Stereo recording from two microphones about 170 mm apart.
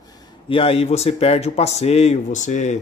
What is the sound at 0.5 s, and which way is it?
Speech, 35° left (ahead or behind).